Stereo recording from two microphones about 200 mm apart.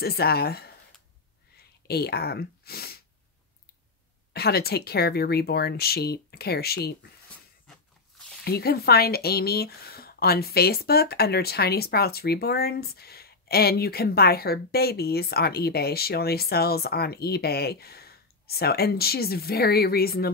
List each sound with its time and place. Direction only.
0.0 s speech: 50° left (ahead or behind)
1.9 s speech: 50° left (ahead or behind)
4.3 s speech: 50° left (ahead or behind)
8.5 s speech: 50° left (ahead or behind)